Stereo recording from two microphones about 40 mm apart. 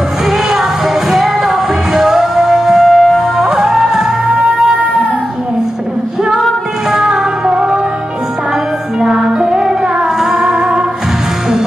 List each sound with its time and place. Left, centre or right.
0.3 s music: centre
6.9 s music: centre
9.0 s music: centre